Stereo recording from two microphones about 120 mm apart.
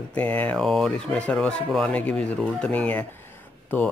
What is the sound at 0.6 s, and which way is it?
Speech, centre (ahead or behind).